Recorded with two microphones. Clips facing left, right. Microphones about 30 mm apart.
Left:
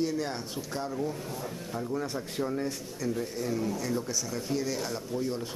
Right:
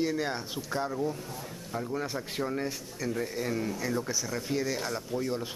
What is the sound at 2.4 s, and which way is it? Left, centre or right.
A man's voice, centre.